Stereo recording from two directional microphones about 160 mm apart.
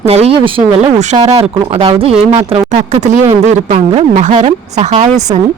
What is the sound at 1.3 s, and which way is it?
Speech, 35° right (ahead or behind).